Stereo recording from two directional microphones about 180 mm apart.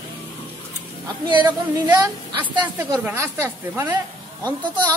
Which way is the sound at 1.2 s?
25° right (ahead or behind).